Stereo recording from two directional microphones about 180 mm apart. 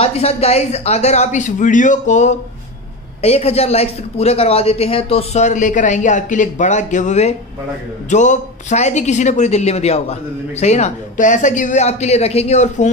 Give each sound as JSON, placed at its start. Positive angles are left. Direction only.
{"t": 0.0, "sound": "speech", "side_deg": 35}